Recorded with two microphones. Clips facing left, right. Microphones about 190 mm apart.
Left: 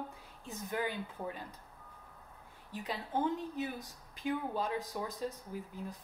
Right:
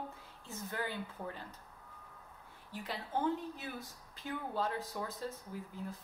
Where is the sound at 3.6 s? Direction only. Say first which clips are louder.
Left 6 dB; 15° left (ahead or behind).